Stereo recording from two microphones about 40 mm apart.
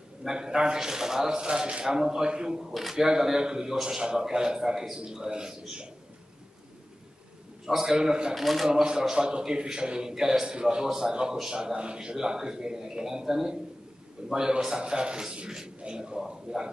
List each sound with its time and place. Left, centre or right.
0.2 s a man's voice: centre
2.7 s speech: centre
3.0 s a man's voice: centre
7.6 s a man's voice: centre
8.4 s speech: centre
8.6 s a man's voice: centre